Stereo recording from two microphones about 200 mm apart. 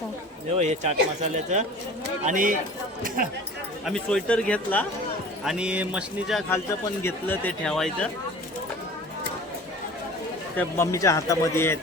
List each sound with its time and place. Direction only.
0.6 s speech: 35° right (ahead or behind)
3.8 s speech: 5° left (ahead or behind)
5.5 s speech: 5° right (ahead or behind)
7.0 s speech: 10° left (ahead or behind)
10.6 s a man's voice: 15° left (ahead or behind)